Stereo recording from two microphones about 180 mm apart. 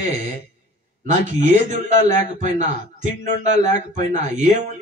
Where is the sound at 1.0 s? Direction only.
40° right (ahead or behind).